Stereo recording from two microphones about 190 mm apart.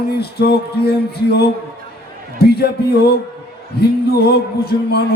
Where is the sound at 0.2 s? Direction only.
55° left (ahead or behind).